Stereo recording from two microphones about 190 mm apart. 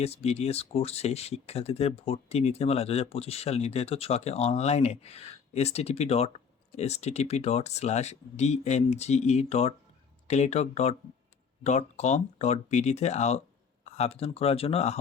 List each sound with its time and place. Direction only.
0.0 s speech: 35° left (ahead or behind)